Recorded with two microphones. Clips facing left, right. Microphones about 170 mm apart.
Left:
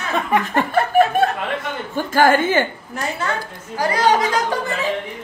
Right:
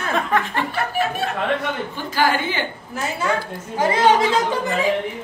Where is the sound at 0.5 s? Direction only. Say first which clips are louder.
Left 7 dB; 50° left (ahead or behind).